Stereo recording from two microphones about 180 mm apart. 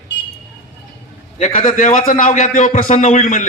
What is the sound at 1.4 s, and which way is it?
A man's voice, 50° left (ahead or behind).